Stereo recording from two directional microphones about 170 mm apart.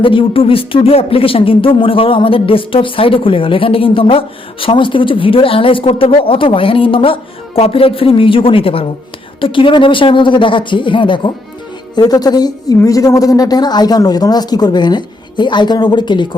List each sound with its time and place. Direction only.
0.0 s a woman's voice: 30° left (ahead or behind)